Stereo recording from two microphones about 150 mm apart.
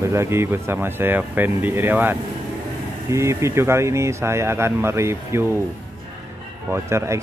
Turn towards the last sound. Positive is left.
turn(degrees=-20)  # may be behind; listen again after turning